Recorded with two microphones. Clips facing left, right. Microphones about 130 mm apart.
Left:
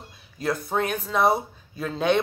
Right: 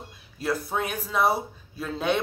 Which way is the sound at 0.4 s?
5° right (ahead or behind).